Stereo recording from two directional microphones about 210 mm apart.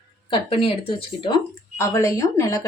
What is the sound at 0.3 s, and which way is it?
Speech, 25° left (ahead or behind).